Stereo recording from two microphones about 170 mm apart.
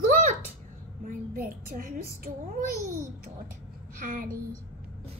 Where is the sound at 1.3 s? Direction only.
55° right (ahead or behind).